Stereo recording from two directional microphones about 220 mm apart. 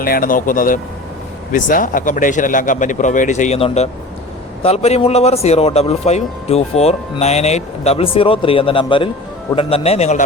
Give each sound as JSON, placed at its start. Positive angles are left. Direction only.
{"t": 0.0, "sound": "a man's voice", "side_deg": 40}